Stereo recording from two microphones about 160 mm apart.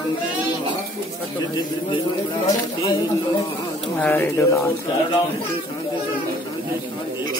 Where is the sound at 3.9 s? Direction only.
10° left (ahead or behind).